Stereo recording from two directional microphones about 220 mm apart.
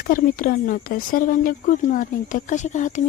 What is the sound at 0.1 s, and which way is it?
Speech, 40° left (ahead or behind).